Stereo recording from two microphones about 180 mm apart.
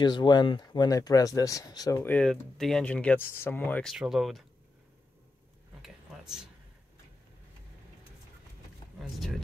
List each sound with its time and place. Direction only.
0.0 s speech: 25° left (ahead or behind)
2.1 s speech: 5° left (ahead or behind)
3.9 s speech: centre (ahead or behind)
5.8 s a sound: 5° right (ahead or behind)
8.9 s speech: centre (ahead or behind)